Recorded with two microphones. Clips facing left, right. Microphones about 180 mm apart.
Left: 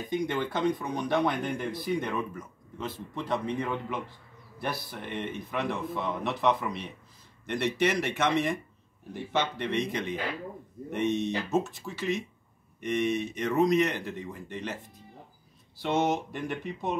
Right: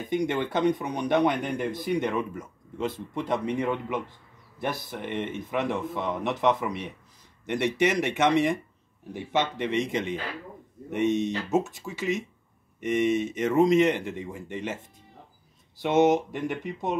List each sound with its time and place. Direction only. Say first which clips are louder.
0.1 s speech: right 4 dB; 20° right (ahead or behind)
15.8 s speech: right 6 dB; 20° right (ahead or behind)